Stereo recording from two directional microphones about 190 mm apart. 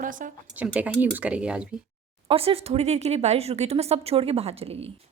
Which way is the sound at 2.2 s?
30° right (ahead or behind).